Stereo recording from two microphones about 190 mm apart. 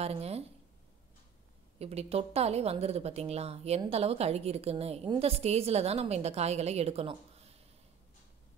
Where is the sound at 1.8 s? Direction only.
35° right (ahead or behind).